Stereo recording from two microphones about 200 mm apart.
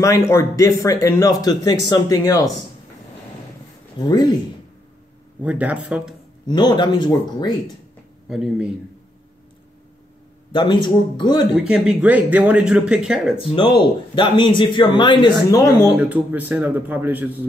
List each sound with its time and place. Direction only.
0.0 s speech: 15° left (ahead or behind)
4.0 s speech: 20° left (ahead or behind)
5.4 s a man's voice: 5° right (ahead or behind)
6.4 s speech: 20° left (ahead or behind)
8.3 s speech: centre (ahead or behind)
10.5 s speech: 25° left (ahead or behind)
11.5 s speech: 5° right (ahead or behind)
13.4 s speech: 25° left (ahead or behind)
16.0 s a man's voice: 10° right (ahead or behind)